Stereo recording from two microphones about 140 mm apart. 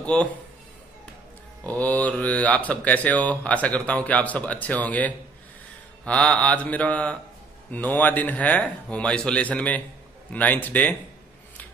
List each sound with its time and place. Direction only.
0.0 s a man's voice: 10° left (ahead or behind)
1.7 s speech: 10° left (ahead or behind)